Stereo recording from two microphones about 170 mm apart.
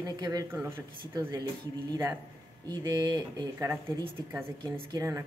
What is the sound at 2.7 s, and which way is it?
Speech, 25° right (ahead or behind).